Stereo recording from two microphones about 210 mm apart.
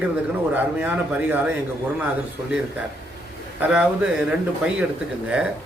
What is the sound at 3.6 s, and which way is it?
Speech, 5° right (ahead or behind).